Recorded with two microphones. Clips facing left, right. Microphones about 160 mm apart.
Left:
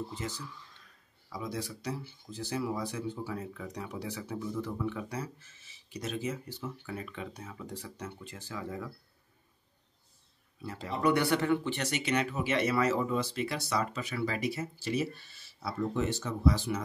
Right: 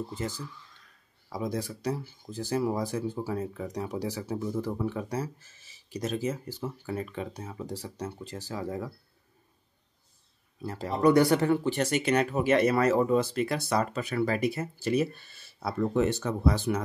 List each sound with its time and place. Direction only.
1.3 s speech: 45° right (ahead or behind)
10.6 s speech: 40° right (ahead or behind)